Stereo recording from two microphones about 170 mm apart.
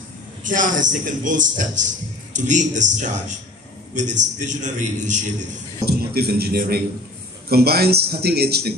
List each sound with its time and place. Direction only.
0.4 s a man's voice: 50° right (ahead or behind)
5.9 s a man's voice: 65° right (ahead or behind)